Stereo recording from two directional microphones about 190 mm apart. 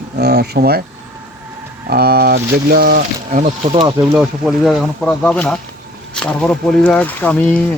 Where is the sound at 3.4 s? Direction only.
30° right (ahead or behind).